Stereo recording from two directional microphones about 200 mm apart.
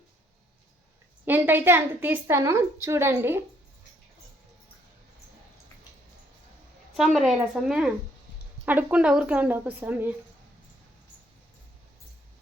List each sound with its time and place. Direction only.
1.2 s a woman's voice: 10° right (ahead or behind)
6.9 s a woman's voice: centre (ahead or behind)